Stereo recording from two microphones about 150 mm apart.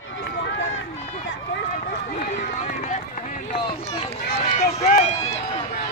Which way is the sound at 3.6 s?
35° left (ahead or behind).